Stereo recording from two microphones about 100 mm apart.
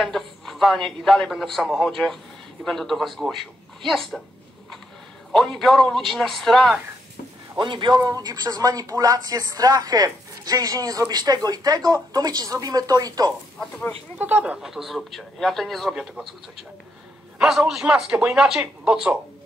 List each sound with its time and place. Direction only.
0.0 s a man's voice: 5° left (ahead or behind)
5.3 s a man's voice: 5° left (ahead or behind)
7.5 s speech: 55° right (ahead or behind); by 13.3 s 40° right (ahead or behind)
14.1 s a man's voice: 15° right (ahead or behind)
17.4 s a man's voice: 5° right (ahead or behind)